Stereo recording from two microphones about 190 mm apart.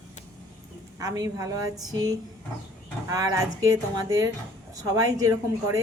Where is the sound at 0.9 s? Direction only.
20° right (ahead or behind).